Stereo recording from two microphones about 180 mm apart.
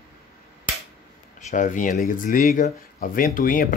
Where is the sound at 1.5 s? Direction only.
45° left (ahead or behind).